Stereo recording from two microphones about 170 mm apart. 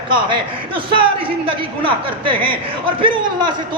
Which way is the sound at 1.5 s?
30° right (ahead or behind).